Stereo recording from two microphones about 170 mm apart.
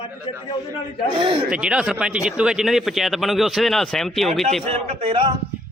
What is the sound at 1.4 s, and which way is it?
Speech, 5° right (ahead or behind).